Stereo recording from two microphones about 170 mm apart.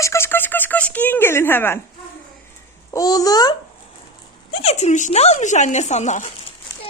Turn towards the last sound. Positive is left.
turn(degrees=45)  # may be behind; listen again after turning